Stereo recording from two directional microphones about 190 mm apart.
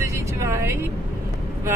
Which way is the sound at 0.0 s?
15° right (ahead or behind).